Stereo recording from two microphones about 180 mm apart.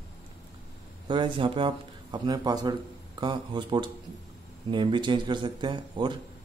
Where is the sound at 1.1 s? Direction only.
25° right (ahead or behind).